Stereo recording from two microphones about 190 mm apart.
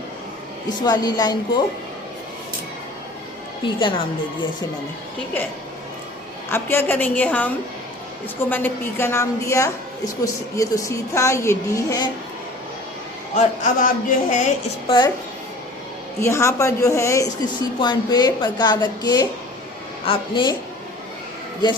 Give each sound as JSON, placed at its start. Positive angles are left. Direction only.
{"t": 0.8, "sound": "speech", "side_deg": 20}
{"t": 3.8, "sound": "speech", "side_deg": 25}
{"t": 6.5, "sound": "a woman's voice", "side_deg": 10}
{"t": 13.3, "sound": "speech", "side_deg": 45}
{"t": 14.8, "sound": "speech", "side_deg": 25}
{"t": 16.2, "sound": "a woman's voice", "side_deg": 15}